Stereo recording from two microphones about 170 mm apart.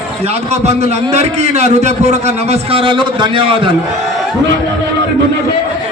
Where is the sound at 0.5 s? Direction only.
40° right (ahead or behind).